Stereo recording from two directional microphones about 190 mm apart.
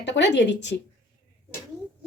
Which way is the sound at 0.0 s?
65° left (ahead or behind).